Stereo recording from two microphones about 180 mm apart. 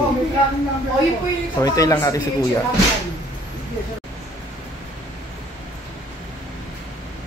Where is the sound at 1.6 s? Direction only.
20° left (ahead or behind).